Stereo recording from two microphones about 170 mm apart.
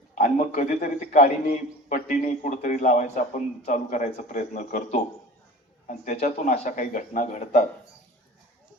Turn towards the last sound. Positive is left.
turn(degrees=45)  # may be behind; listen again after turning